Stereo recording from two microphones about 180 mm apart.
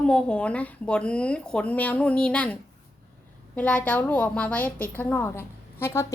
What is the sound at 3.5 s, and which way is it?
A woman's voice, 5° left (ahead or behind).